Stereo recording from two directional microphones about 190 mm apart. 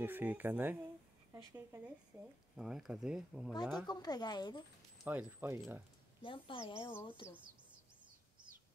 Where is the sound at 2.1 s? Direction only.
15° right (ahead or behind).